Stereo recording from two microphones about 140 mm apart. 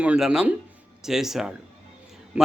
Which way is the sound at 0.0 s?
5° right (ahead or behind).